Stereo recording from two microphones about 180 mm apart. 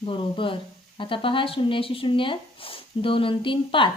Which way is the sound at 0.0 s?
30° left (ahead or behind).